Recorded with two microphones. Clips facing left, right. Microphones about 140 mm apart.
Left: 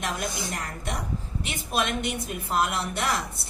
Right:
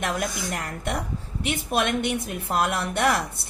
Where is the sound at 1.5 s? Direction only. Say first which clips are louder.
Right 4 dB; 60° right (ahead or behind).